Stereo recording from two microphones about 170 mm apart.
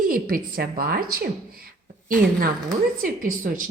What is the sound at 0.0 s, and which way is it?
A woman's voice, 60° right (ahead or behind).